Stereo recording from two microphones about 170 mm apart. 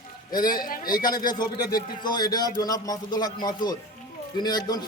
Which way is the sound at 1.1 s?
25° left (ahead or behind).